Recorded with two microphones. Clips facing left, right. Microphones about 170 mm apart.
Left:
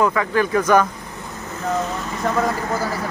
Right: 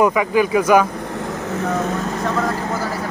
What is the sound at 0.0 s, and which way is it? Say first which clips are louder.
Speech: right 3 dB; 15° right (ahead or behind).